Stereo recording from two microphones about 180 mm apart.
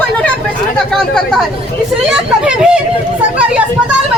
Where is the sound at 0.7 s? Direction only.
5° left (ahead or behind).